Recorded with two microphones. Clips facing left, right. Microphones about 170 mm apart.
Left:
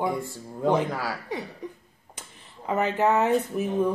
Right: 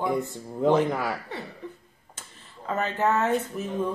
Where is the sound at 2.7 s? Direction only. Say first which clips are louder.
Left 2 dB; 15° left (ahead or behind).